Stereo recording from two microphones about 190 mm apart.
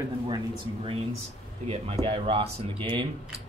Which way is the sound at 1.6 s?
30° right (ahead or behind).